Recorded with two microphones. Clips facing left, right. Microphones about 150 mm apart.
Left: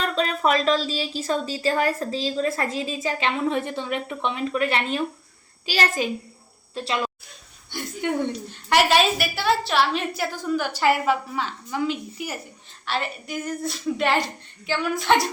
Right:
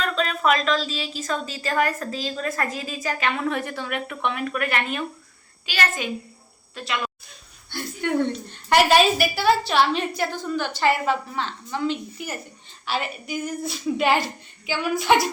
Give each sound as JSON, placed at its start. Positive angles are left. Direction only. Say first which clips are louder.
{"t": 0.0, "sound": "a woman's voice", "louder": "even", "side_deg": 35}
{"t": 7.7, "sound": "speech", "louder": "right 1 dB", "side_deg": 15}
{"t": 8.7, "sound": "a woman's voice", "louder": "right 2 dB", "side_deg": 0}
{"t": 12.8, "sound": "a woman's voice", "louder": "even", "side_deg": 0}